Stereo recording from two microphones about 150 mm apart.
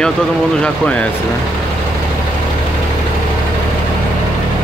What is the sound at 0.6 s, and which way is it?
Speech, 10° left (ahead or behind).